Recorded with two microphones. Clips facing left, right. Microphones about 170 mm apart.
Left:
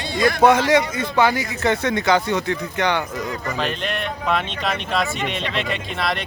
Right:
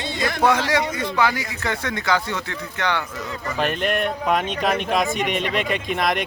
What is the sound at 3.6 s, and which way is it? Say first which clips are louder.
Speech: right 6 dB; 50° right (ahead or behind).